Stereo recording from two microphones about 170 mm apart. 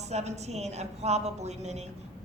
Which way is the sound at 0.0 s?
40° right (ahead or behind).